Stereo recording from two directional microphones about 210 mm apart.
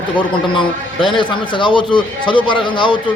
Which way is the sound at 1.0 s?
20° left (ahead or behind).